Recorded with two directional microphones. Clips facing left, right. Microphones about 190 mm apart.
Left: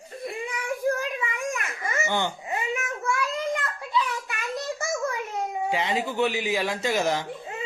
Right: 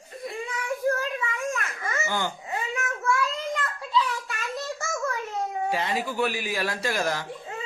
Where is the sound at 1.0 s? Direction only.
15° left (ahead or behind).